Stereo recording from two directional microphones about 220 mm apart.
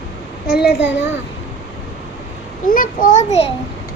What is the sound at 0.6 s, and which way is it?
Speech, 50° left (ahead or behind).